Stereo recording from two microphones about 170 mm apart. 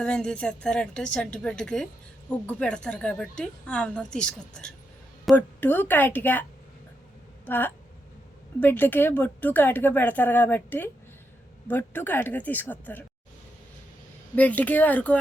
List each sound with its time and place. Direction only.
0.0 s a woman's voice: 5° left (ahead or behind)
7.4 s speech: 10° left (ahead or behind)
14.3 s speech: 10° left (ahead or behind)